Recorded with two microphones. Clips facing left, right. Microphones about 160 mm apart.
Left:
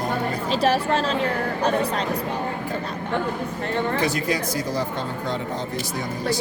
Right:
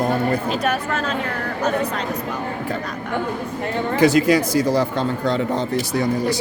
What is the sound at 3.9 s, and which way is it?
Speech, 80° right.